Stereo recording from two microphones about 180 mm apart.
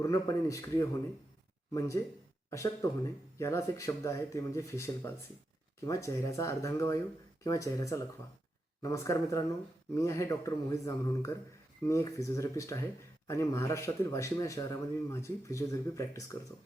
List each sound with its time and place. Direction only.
0.0 s speech: 20° left (ahead or behind)
2.5 s speech: 15° left (ahead or behind)